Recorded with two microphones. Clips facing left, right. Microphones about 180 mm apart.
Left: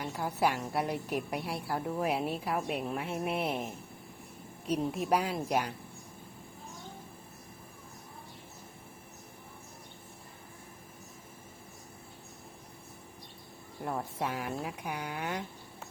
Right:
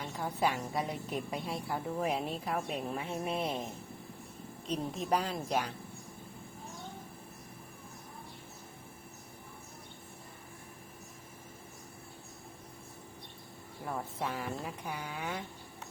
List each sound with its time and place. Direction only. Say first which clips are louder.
0.0 s a woman's voice: left 2 dB; 5° left (ahead or behind)
4.6 s a woman's voice: left 4 dB; 10° left (ahead or behind)
13.8 s a woman's voice: left 3 dB; 15° left (ahead or behind)